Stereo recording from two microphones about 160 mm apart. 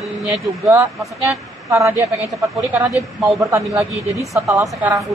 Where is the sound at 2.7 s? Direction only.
20° right (ahead or behind).